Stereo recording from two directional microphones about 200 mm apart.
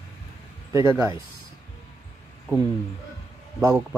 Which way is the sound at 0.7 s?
15° right (ahead or behind).